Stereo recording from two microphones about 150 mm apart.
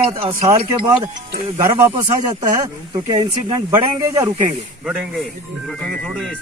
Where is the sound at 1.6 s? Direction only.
20° right (ahead or behind).